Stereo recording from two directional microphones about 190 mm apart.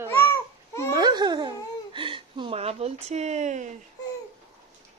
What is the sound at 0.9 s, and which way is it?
Speech, 20° right (ahead or behind).